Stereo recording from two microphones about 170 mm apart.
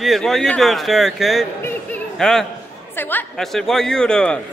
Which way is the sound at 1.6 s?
5° left (ahead or behind).